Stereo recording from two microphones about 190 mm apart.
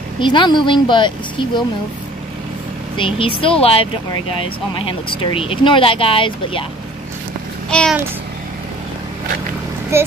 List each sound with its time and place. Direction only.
0.2 s speech: 25° left (ahead or behind)
3.0 s speech: 30° left (ahead or behind)
7.7 s speech: 5° left (ahead or behind)
9.9 s a child's voice: 15° right (ahead or behind)